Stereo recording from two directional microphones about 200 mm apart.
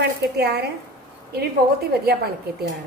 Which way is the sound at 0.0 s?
55° right (ahead or behind).